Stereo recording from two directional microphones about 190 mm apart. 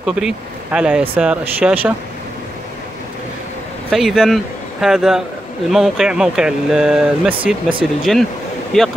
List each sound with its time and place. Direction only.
0.0 s speech: 5° right (ahead or behind)
3.9 s speech: centre (ahead or behind)